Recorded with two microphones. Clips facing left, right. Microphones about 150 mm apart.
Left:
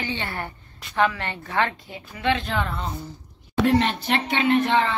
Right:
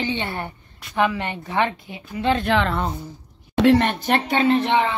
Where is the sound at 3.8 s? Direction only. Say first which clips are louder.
Right 3 dB; 50° right (ahead or behind); by 4.7 s 35° right (ahead or behind).